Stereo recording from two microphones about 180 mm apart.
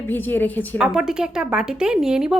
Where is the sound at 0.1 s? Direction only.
10° left (ahead or behind).